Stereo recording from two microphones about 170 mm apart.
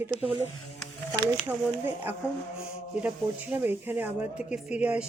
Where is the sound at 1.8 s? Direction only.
10° right (ahead or behind).